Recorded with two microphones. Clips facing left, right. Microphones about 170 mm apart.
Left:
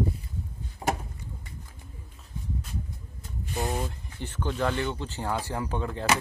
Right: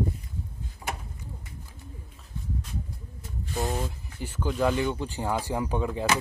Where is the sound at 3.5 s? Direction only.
Centre (ahead or behind).